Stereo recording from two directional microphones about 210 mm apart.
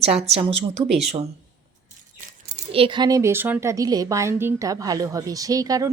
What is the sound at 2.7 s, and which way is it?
A woman's voice, 25° right (ahead or behind).